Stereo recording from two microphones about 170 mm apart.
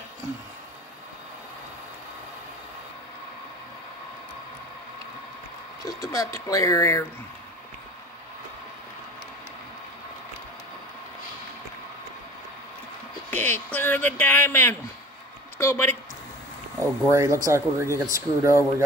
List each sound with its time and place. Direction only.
5.9 s speech: 20° left (ahead or behind)
13.3 s speech: 10° left (ahead or behind)
16.8 s speech: 15° right (ahead or behind)